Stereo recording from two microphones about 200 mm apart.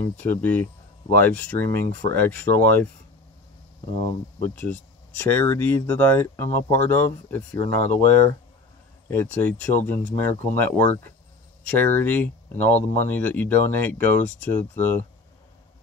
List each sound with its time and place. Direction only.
0.3 s speech: 10° left (ahead or behind)
4.6 s speech: 10° left (ahead or behind)